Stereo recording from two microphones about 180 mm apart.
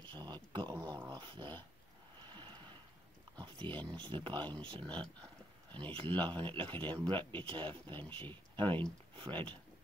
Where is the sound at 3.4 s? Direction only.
25° right (ahead or behind).